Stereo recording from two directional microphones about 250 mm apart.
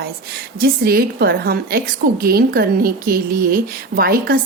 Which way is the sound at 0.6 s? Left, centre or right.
Right.